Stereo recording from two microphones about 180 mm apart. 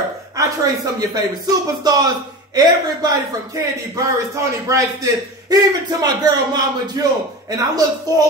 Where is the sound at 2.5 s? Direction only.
20° right (ahead or behind).